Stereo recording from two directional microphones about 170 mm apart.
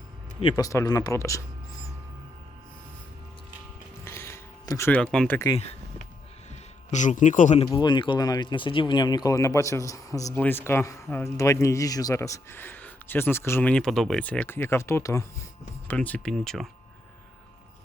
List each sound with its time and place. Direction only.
0.5 s speech: 20° left (ahead or behind)
4.0 s a sound: 15° left (ahead or behind)
4.9 s speech: 5° left (ahead or behind)
6.9 s speech: 45° left (ahead or behind)
7.7 s speech: 25° left (ahead or behind); by 16.6 s centre (ahead or behind)